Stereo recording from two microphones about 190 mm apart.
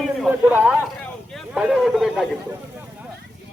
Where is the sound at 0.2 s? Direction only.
10° right (ahead or behind).